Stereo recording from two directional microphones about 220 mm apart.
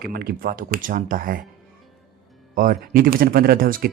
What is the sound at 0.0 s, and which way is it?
Speech, 45° right (ahead or behind).